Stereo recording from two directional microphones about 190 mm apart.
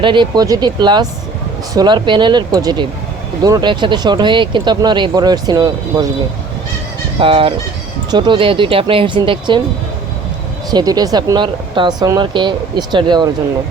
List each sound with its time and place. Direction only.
0.0 s speech: 25° right (ahead or behind)
7.2 s speech: 30° right (ahead or behind)
10.7 s speech: 20° right (ahead or behind)